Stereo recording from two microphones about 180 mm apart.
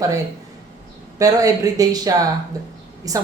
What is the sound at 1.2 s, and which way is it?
Speech, 20° right (ahead or behind).